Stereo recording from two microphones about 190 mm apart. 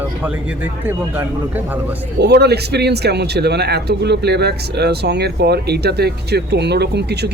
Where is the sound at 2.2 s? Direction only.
60° right (ahead or behind).